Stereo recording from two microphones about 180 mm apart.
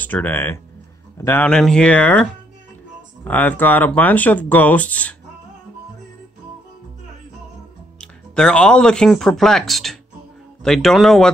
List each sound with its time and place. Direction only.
0.0 s speech: 10° left (ahead or behind)
3.3 s speech: 10° left (ahead or behind)
8.0 s speech: 5° left (ahead or behind)